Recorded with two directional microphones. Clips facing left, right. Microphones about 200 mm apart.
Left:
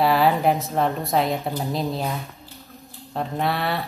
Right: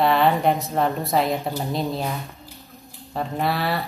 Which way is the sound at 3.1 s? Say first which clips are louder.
Even; centre (ahead or behind).